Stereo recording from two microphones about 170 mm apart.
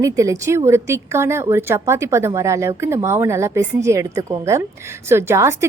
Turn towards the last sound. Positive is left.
turn(degrees=-15)  # may be behind; listen again after turning